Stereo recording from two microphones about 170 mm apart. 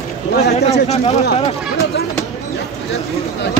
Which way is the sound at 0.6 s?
40° left (ahead or behind).